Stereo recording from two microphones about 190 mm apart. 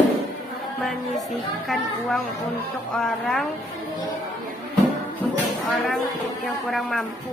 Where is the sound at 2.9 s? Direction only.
5° left (ahead or behind).